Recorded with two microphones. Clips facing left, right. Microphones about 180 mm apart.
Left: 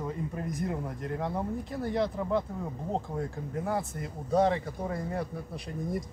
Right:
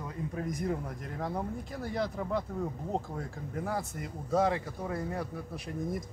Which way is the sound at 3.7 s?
Centre (ahead or behind).